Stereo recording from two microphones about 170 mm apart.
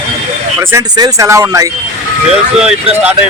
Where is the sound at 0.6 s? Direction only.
15° right (ahead or behind).